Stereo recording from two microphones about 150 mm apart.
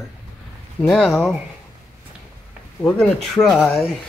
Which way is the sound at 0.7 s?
Centre (ahead or behind).